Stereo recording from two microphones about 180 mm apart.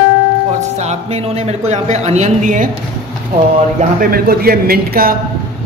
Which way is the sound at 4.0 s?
55° right (ahead or behind).